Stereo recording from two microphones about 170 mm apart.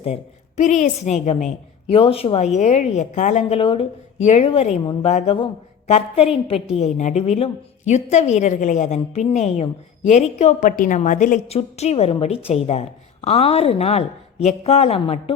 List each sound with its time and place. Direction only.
0.0 s a woman's voice: 40° left (ahead or behind)
3.6 s a woman's voice: 30° left (ahead or behind)